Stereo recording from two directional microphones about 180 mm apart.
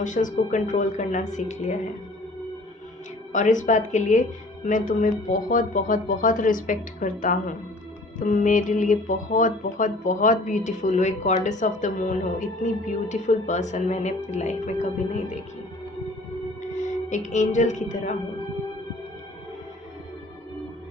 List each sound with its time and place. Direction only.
0.0 s speech: 45° left (ahead or behind)
3.3 s speech: 45° left (ahead or behind)
16.8 s speech: 45° left (ahead or behind)